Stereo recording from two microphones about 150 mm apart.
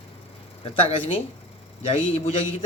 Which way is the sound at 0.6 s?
40° left (ahead or behind).